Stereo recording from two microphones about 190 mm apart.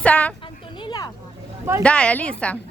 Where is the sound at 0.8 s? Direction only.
20° left (ahead or behind).